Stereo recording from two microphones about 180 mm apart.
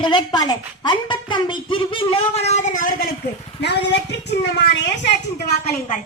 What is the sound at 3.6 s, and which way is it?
A woman's voice, 70° left (ahead or behind).